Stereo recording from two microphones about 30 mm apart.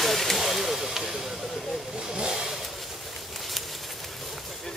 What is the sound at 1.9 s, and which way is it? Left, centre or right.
Vehicle, right.